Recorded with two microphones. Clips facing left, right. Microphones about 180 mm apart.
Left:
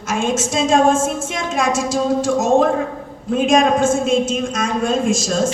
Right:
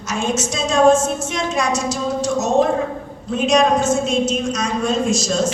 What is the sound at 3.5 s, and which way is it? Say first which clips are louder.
A woman's voice: left 1 dB; 50° left (ahead or behind).